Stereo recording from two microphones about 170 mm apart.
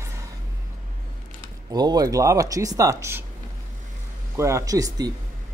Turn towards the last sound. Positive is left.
turn(degrees=-20)  # may be behind; listen again after turning